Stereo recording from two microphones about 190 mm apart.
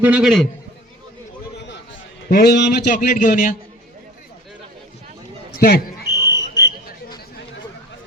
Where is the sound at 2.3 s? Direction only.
50° left (ahead or behind).